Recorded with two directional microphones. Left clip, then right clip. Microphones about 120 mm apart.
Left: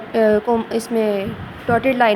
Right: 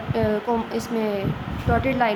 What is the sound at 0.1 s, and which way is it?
A woman's voice, 50° left (ahead or behind).